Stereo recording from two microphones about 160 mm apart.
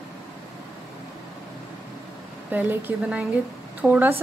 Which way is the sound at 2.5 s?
10° right (ahead or behind).